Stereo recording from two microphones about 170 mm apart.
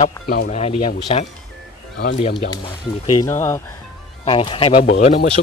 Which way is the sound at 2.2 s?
25° left (ahead or behind).